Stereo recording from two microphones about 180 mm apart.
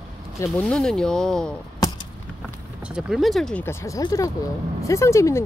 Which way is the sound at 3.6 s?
20° left (ahead or behind).